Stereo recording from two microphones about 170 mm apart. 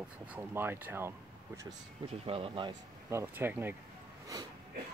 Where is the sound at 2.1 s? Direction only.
35° right (ahead or behind).